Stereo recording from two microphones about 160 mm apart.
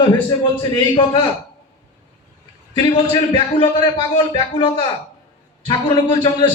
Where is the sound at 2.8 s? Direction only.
30° left (ahead or behind).